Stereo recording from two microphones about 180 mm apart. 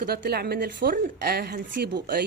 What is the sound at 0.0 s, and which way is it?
A woman's voice, 60° right (ahead or behind).